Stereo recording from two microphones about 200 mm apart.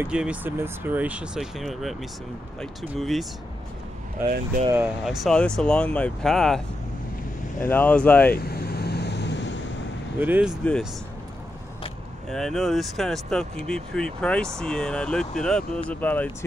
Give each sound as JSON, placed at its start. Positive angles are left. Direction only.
{"t": 0.0, "sound": "speech", "side_deg": -5}
{"t": 4.2, "sound": "speech", "side_deg": -10}
{"t": 7.6, "sound": "speech", "side_deg": 10}
{"t": 8.4, "sound": "vehicle", "side_deg": 50}
{"t": 10.1, "sound": "speech", "side_deg": -10}
{"t": 10.6, "sound": "speech", "side_deg": 5}
{"t": 12.3, "sound": "speech", "side_deg": 0}